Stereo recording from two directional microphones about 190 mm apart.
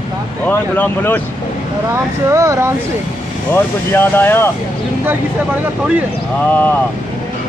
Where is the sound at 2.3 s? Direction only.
15° right (ahead or behind).